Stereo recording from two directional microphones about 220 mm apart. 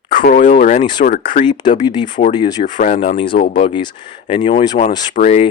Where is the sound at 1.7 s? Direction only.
20° left (ahead or behind).